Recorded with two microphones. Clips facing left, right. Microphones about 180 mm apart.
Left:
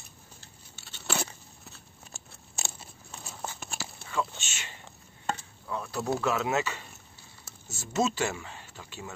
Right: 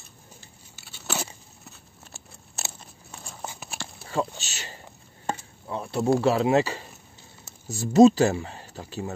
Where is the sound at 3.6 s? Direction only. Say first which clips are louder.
Right 1 dB; centre (ahead or behind).